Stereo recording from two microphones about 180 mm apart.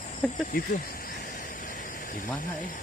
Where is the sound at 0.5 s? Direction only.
55° left (ahead or behind).